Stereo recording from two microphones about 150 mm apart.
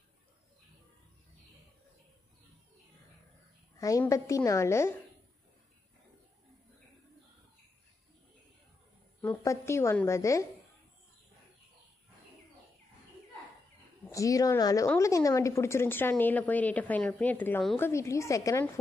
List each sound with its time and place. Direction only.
3.7 s a sound: 20° left (ahead or behind)
4.1 s a woman's voice: 20° left (ahead or behind)
9.2 s a woman's voice: 15° left (ahead or behind)
14.0 s a woman's voice: 20° left (ahead or behind)